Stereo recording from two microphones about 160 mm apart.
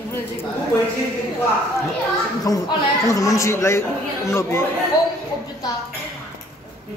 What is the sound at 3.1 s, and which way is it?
A man's voice, 20° left (ahead or behind).